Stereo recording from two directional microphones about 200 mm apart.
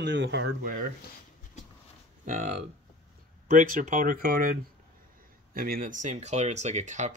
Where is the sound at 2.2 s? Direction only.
40° right (ahead or behind).